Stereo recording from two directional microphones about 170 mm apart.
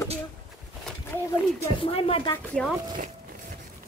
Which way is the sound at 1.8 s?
35° left (ahead or behind).